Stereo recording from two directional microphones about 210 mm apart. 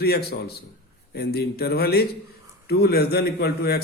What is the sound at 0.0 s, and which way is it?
A man's voice, 50° left (ahead or behind).